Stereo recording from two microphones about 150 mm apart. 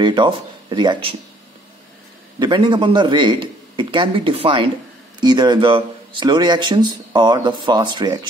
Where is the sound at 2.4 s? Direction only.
30° right (ahead or behind).